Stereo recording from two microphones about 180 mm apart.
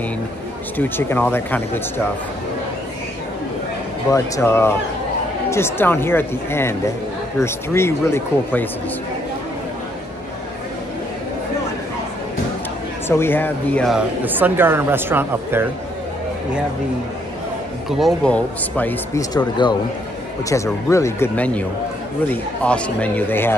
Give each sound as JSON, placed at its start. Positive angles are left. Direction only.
{"t": 0.7, "sound": "speech", "side_deg": 10}
{"t": 4.1, "sound": "speech", "side_deg": 15}
{"t": 13.1, "sound": "speech", "side_deg": 10}
{"t": 13.9, "sound": "speech", "side_deg": -10}
{"t": 17.8, "sound": "speech", "side_deg": 0}
{"t": 19.6, "sound": "a man's voice", "side_deg": 25}